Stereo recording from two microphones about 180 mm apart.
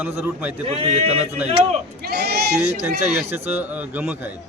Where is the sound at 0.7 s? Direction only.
35° right (ahead or behind).